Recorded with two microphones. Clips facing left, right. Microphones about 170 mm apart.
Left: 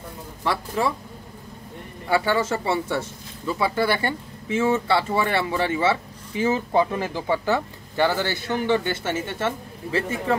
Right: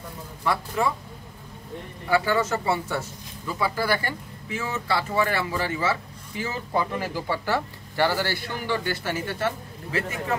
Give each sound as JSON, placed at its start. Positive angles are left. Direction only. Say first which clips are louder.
{"t": 2.0, "sound": "speech", "louder": "left 1 dB", "side_deg": 30}